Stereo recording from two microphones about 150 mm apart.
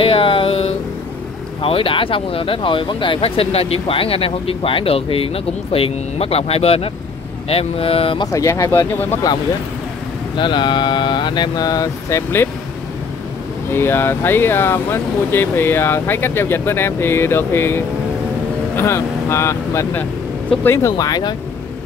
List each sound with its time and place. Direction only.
0.0 s a sound: 35° left (ahead or behind)
1.6 s speech: 40° left (ahead or behind)
8.3 s speech: 20° left (ahead or behind)
10.3 s speech: 30° left (ahead or behind)
13.7 s speech: 15° left (ahead or behind)